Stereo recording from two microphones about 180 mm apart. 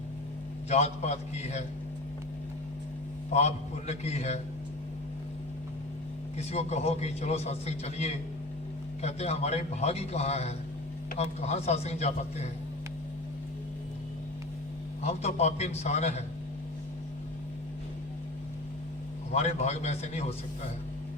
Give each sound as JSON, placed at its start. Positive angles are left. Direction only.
{"t": 0.7, "sound": "a man's voice", "side_deg": 35}
{"t": 3.3, "sound": "a man's voice", "side_deg": 35}
{"t": 6.3, "sound": "a man's voice", "side_deg": 35}
{"t": 15.0, "sound": "a man's voice", "side_deg": 40}
{"t": 19.3, "sound": "a man's voice", "side_deg": 40}